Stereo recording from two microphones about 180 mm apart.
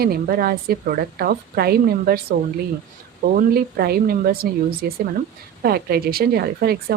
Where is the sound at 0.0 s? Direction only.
55° right (ahead or behind).